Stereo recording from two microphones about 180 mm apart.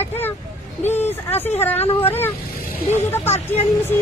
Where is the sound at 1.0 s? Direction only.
10° left (ahead or behind).